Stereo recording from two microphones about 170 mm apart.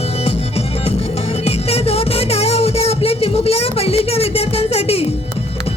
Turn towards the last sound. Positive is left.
turn(degrees=35)  # may be behind; listen again after turning